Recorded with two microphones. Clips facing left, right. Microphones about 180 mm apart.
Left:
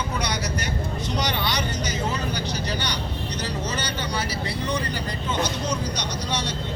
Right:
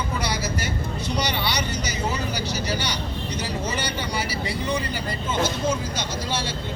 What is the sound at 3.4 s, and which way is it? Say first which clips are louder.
Speech: right 1 dB; 10° right (ahead or behind).